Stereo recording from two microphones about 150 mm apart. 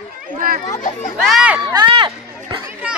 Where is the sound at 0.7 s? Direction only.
60° left (ahead or behind).